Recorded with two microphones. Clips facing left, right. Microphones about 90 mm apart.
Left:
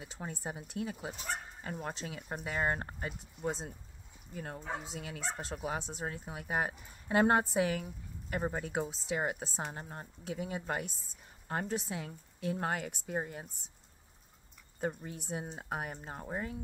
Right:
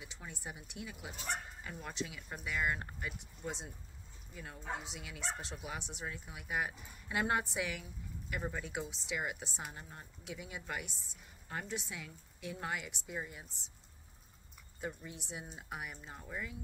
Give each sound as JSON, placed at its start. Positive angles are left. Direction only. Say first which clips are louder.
{"t": 0.0, "sound": "a woman's voice", "louder": "left 6 dB", "side_deg": 40}
{"t": 14.8, "sound": "speech", "louder": "left 6 dB", "side_deg": 45}